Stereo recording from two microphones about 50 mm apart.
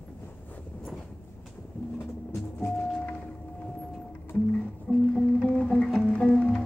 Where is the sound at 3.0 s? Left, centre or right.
Left.